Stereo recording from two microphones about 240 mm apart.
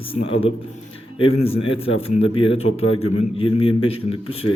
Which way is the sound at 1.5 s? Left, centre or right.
Left.